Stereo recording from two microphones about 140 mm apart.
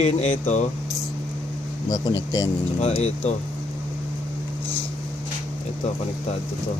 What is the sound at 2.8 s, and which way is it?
Speech, 50° left (ahead or behind).